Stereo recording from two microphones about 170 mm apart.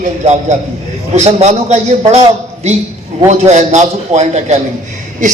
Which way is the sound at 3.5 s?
45° right (ahead or behind).